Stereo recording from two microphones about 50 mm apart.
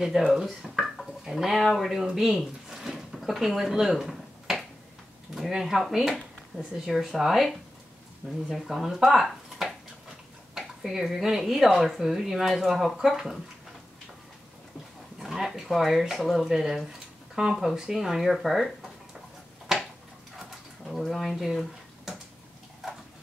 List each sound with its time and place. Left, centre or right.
0.3 s speech: centre
6.5 s speech: right
6.9 s speech: centre
15.1 s speech: centre
16.4 s speech: centre
20.3 s pigeon: centre